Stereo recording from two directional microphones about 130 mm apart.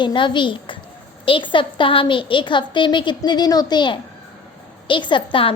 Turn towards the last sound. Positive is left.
turn(degrees=40)  # may be behind; listen again after turning